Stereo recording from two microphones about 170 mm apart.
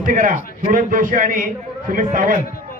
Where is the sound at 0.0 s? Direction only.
50° right (ahead or behind).